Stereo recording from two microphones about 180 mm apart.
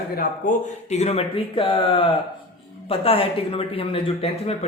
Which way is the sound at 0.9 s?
35° left (ahead or behind).